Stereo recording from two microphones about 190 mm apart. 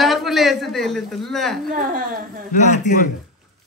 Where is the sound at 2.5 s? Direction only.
40° left (ahead or behind).